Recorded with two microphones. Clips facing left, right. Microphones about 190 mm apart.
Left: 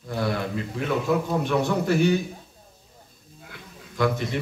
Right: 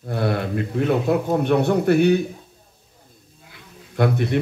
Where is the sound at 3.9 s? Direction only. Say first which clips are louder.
Right 4 dB; 60° right (ahead or behind).